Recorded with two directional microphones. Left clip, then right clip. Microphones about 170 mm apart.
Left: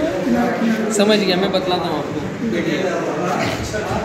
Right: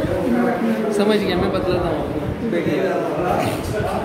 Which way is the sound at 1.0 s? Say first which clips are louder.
Left 4 dB; 30° left (ahead or behind).